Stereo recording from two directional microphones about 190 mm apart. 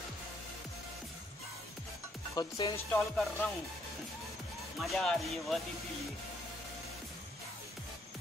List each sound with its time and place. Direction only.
2.3 s speech: 20° left (ahead or behind)
2.9 s speech: 5° left (ahead or behind)
4.8 s speech: 5° left (ahead or behind)